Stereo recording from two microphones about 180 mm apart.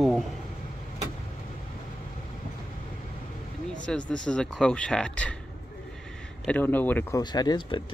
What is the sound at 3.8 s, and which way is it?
Speech, 5° left (ahead or behind).